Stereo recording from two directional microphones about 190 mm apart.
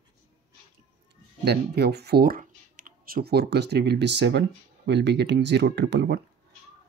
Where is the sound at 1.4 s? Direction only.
60° right (ahead or behind).